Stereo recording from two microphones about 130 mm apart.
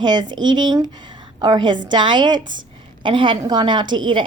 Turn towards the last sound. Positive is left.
turn(degrees=-40)  # may be behind; listen again after turning